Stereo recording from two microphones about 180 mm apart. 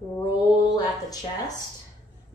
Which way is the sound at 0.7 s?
20° left (ahead or behind).